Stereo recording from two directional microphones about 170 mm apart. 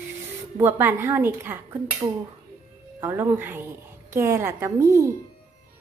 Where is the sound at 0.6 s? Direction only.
10° right (ahead or behind).